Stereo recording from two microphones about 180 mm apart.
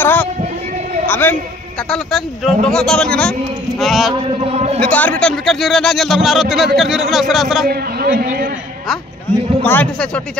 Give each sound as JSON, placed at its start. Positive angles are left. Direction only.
{"t": 0.0, "sound": "a man's voice", "side_deg": 10}
{"t": 1.9, "sound": "a man's voice", "side_deg": 0}
{"t": 4.1, "sound": "speech", "side_deg": -30}
{"t": 4.7, "sound": "a man's voice", "side_deg": 5}
{"t": 7.6, "sound": "a man's voice", "side_deg": -60}
{"t": 9.3, "sound": "a man's voice", "side_deg": 10}